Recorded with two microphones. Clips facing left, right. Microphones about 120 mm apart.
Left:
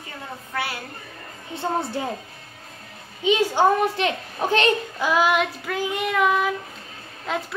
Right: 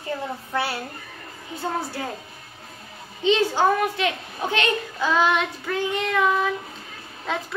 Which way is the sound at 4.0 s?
35° left (ahead or behind).